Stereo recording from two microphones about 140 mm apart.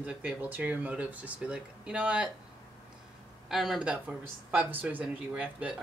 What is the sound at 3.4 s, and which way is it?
Speech, centre (ahead or behind).